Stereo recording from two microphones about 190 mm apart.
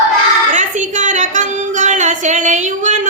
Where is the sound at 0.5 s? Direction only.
40° right (ahead or behind).